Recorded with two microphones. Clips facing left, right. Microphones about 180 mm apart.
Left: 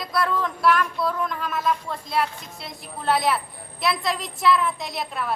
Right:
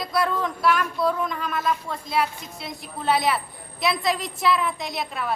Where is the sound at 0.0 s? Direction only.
Centre (ahead or behind).